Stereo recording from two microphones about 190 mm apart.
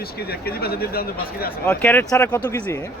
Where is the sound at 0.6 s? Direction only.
55° left (ahead or behind).